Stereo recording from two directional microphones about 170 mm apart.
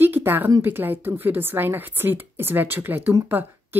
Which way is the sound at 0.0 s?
10° right (ahead or behind).